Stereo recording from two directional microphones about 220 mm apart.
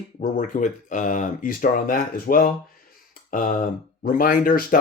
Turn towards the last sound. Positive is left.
turn(degrees=40)  # may be behind; listen again after turning